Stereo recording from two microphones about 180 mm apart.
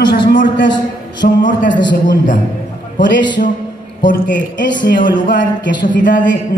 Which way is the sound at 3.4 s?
50° left (ahead or behind).